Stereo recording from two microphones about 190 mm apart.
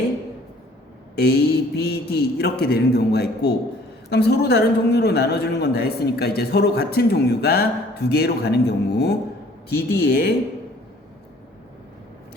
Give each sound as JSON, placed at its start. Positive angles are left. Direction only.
{"t": 1.1, "sound": "a woman's voice", "side_deg": 55}